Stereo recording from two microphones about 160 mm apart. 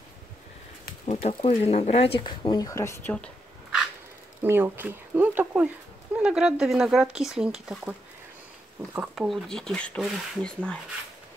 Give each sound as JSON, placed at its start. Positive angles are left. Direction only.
{"t": 1.0, "sound": "speech", "side_deg": 40}
{"t": 4.4, "sound": "speech", "side_deg": -15}
{"t": 9.0, "sound": "speech", "side_deg": -5}